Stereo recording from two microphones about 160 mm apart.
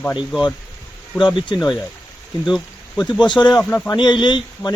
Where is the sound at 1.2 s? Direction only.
30° left (ahead or behind).